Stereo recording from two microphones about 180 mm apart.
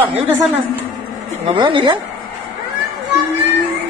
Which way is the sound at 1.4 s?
25° right (ahead or behind).